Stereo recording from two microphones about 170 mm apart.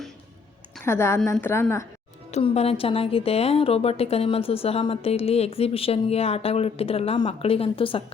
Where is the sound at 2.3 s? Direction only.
35° left (ahead or behind).